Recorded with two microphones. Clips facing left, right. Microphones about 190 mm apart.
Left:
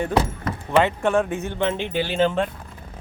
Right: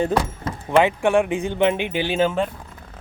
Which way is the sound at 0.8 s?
10° right (ahead or behind).